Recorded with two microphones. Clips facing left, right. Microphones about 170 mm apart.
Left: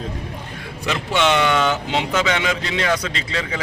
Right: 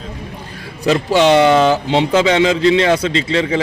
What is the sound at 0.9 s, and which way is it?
Speech, 35° right (ahead or behind).